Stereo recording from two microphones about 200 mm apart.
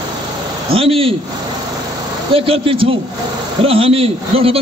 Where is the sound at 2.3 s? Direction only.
25° right (ahead or behind).